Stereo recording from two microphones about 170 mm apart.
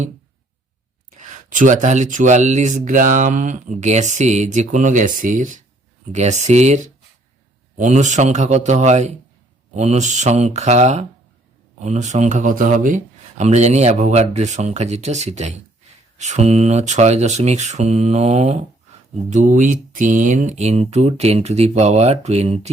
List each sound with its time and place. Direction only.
1.5 s speech: 50° right (ahead or behind)